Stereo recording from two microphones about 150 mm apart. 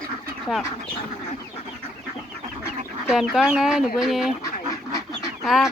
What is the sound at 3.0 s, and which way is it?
Speech, centre (ahead or behind).